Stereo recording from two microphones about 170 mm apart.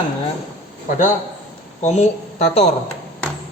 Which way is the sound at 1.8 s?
40° left (ahead or behind).